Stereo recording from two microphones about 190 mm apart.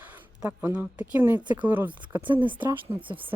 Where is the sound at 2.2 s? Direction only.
25° right (ahead or behind).